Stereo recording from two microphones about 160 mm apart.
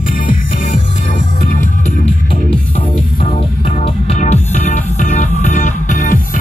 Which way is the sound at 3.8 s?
40° left (ahead or behind).